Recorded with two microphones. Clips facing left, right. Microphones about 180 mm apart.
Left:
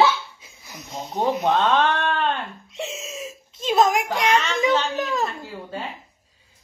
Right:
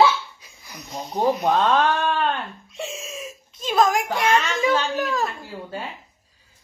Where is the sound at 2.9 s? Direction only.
25° left (ahead or behind).